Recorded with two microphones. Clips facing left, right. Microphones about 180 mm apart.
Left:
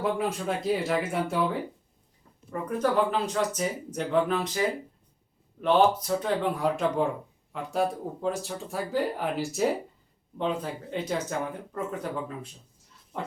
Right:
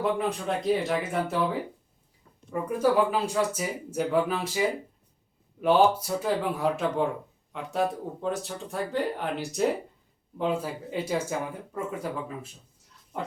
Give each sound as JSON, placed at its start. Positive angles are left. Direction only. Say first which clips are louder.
{"t": 0.0, "sound": "speech", "louder": "right 1 dB", "side_deg": 0}
{"t": 2.5, "sound": "speech", "louder": "right 2 dB", "side_deg": -10}